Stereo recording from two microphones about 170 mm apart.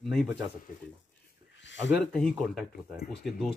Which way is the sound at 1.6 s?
90° left.